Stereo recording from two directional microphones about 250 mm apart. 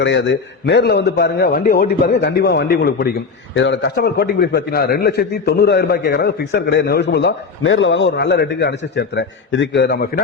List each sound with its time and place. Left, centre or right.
0.0 s a man's voice: left